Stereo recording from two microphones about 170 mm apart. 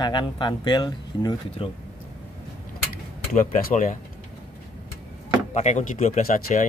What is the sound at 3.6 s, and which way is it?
Speech, 50° left (ahead or behind).